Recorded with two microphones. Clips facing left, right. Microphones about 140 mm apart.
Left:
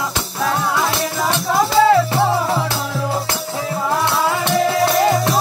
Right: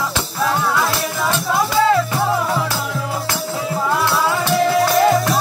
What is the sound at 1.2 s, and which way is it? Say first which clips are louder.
Music: left 2 dB; 25° left (ahead or behind).